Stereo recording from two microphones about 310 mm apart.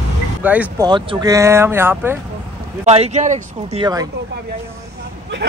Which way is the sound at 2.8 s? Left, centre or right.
Right.